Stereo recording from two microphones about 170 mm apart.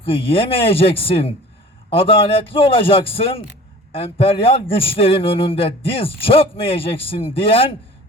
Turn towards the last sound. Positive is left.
turn(degrees=35)  # may be behind; listen again after turning